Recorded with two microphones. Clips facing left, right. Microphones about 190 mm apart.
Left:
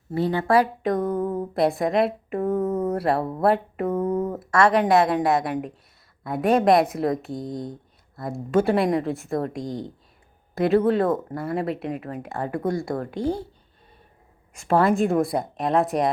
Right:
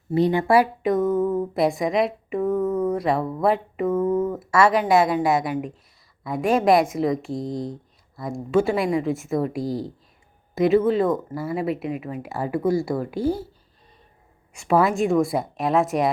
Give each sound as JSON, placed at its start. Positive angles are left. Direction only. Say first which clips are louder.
{"t": 0.1, "sound": "speech", "louder": "right 3 dB", "side_deg": -15}
{"t": 1.2, "sound": "speech", "louder": "right 4 dB", "side_deg": 15}
{"t": 1.5, "sound": "speech", "louder": "left 2 dB", "side_deg": 0}
{"t": 2.6, "sound": "a sound", "louder": "right 2 dB", "side_deg": 20}
{"t": 2.9, "sound": "speech", "louder": "even", "side_deg": 5}
{"t": 3.4, "sound": "a sound", "louder": "left 1 dB", "side_deg": 0}
{"t": 4.4, "sound": "speech", "louder": "left 3 dB", "side_deg": 0}
{"t": 14.7, "sound": "speech", "louder": "even", "side_deg": -5}